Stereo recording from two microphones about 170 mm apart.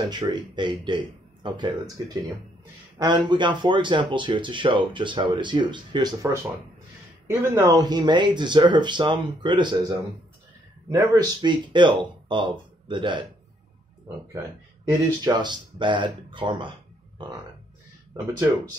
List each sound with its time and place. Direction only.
0.1 s speech: 25° right (ahead or behind)
3.0 s speech: 25° right (ahead or behind)
7.2 s speech: 15° right (ahead or behind)
14.9 s speech: 25° right (ahead or behind)